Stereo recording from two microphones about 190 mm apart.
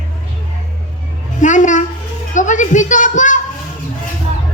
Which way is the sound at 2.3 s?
40° left (ahead or behind).